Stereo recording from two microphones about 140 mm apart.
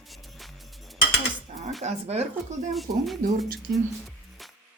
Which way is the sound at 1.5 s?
55° right (ahead or behind).